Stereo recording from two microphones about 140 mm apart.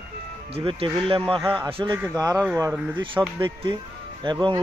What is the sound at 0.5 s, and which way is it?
Speech, 40° right (ahead or behind).